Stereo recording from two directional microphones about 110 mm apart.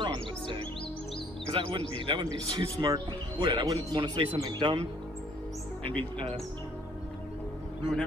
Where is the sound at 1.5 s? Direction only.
50° right (ahead or behind).